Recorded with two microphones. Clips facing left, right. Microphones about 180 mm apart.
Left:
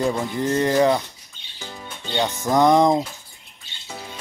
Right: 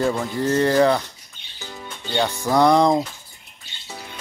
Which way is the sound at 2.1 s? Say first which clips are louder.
Right 1 dB; 20° left (ahead or behind).